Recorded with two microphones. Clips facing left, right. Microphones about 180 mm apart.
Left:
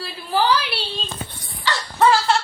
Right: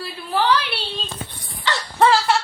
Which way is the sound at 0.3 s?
Centre (ahead or behind).